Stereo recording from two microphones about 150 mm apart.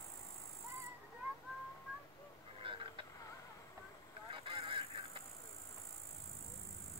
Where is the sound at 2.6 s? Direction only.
35° right (ahead or behind).